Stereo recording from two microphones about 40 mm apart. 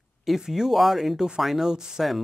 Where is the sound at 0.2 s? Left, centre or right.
Centre.